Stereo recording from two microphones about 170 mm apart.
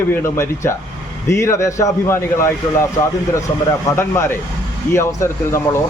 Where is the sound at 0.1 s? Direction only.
15° left (ahead or behind).